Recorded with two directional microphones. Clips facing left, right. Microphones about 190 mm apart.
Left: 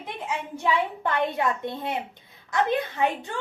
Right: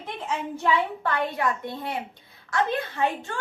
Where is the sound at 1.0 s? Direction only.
20° left (ahead or behind).